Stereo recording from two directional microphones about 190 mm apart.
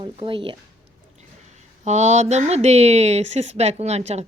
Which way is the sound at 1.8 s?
40° right (ahead or behind).